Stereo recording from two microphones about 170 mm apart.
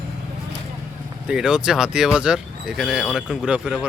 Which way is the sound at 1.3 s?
5° right (ahead or behind).